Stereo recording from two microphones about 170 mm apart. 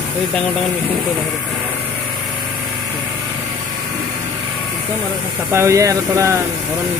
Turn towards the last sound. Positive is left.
turn(degrees=-15)  # may be behind; listen again after turning